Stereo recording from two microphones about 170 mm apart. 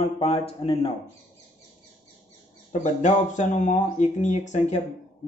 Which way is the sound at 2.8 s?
45° left (ahead or behind).